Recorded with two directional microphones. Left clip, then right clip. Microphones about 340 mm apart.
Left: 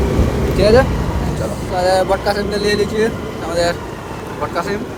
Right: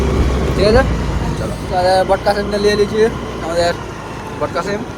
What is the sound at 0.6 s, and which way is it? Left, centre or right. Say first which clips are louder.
Speech: left 1 dB; centre.